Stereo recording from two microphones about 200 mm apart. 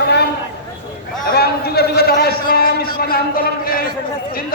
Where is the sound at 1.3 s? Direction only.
50° left (ahead or behind).